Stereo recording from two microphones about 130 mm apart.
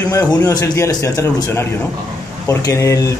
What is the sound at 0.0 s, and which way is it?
Speech, 25° left (ahead or behind).